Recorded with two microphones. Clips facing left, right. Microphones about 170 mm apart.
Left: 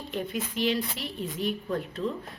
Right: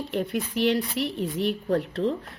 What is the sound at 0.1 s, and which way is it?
Speech, 65° right (ahead or behind).